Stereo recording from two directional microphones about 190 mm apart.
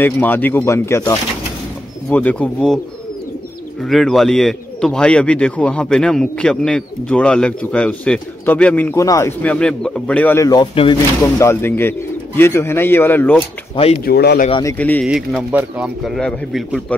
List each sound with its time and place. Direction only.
0.0 s speech: 10° left (ahead or behind)
3.8 s speech: centre (ahead or behind); by 11.0 s 25° left (ahead or behind)
11.3 s speech: 15° left (ahead or behind)
14.0 s a man's voice: 55° left (ahead or behind)
14.5 s speech: 15° left (ahead or behind)
15.0 s speech: 5° right (ahead or behind)